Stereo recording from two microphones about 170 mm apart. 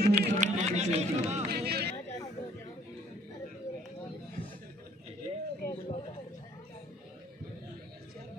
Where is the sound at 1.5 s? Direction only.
70° right (ahead or behind).